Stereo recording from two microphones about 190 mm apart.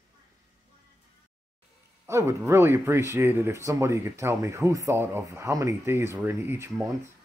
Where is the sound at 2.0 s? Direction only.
15° right (ahead or behind).